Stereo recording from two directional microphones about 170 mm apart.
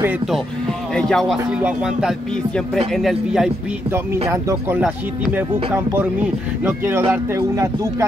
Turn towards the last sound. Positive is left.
turn(degrees=-20)  # may be behind; listen again after turning